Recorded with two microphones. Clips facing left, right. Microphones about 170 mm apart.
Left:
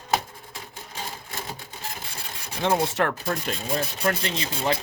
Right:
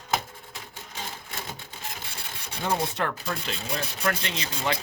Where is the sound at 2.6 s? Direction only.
90° left.